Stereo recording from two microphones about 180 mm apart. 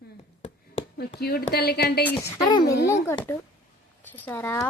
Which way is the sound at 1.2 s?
60° left (ahead or behind).